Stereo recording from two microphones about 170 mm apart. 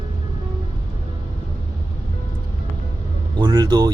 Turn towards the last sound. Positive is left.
turn(degrees=-25)  # may be behind; listen again after turning